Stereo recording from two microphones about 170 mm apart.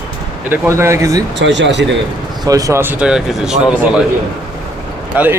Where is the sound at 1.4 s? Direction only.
90° right.